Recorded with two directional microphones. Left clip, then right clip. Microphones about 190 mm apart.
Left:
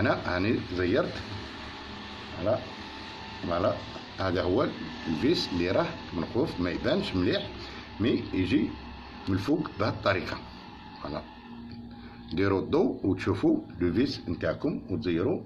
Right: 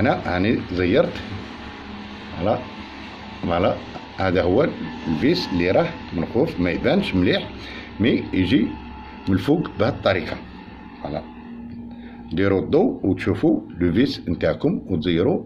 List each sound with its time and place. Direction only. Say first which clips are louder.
0.0 s speech: right 7 dB; 20° right (ahead or behind)
2.4 s speech: right 6 dB; 35° right (ahead or behind)
10.0 s speech: right 4 dB; 10° right (ahead or behind)
12.4 s speech: right 7 dB; 10° right (ahead or behind)
13.7 s speech: right 7 dB; 30° right (ahead or behind)